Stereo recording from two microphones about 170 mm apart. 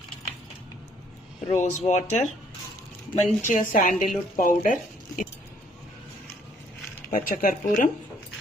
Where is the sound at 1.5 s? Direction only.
45° left (ahead or behind).